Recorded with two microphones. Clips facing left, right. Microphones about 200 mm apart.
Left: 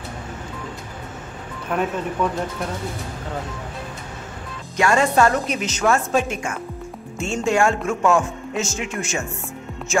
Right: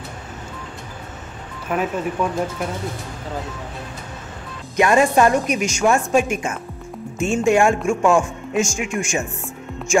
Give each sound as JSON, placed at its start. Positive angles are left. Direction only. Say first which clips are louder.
{"t": 1.7, "sound": "a woman's voice", "louder": "right 1 dB", "side_deg": -5}
{"t": 4.7, "sound": "a woman's voice", "louder": "right 2 dB", "side_deg": -15}